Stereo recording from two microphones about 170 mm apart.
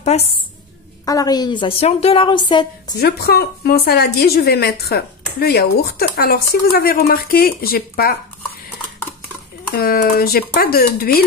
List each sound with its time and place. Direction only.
0.1 s a woman's voice: 40° left (ahead or behind)
1.0 s a woman's voice: 20° left (ahead or behind)
3.0 s speech: 70° left (ahead or behind)
9.8 s speech: 60° left (ahead or behind)